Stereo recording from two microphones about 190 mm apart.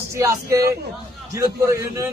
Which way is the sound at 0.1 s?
15° right (ahead or behind).